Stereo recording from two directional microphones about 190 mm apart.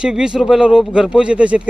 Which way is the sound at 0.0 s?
5° right (ahead or behind).